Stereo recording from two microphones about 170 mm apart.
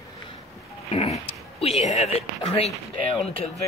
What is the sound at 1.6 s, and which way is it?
Speech, 40° left (ahead or behind).